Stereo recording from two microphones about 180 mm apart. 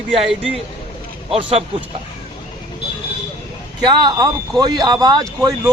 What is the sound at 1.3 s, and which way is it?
Speech, 30° right (ahead or behind).